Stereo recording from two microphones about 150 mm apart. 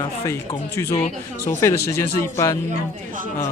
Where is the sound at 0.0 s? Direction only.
20° left (ahead or behind).